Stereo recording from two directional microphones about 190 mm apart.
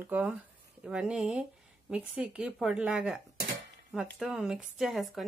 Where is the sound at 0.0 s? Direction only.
5° right (ahead or behind).